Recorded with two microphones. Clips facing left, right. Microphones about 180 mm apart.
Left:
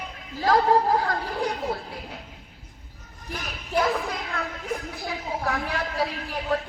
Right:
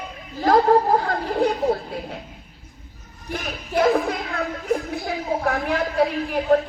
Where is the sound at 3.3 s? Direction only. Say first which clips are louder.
Right 4 dB; 55° right (ahead or behind).